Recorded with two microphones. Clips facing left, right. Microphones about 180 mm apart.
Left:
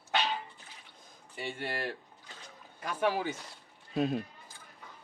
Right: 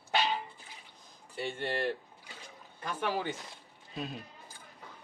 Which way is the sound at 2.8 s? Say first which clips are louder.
Left 3 dB; 10° left (ahead or behind).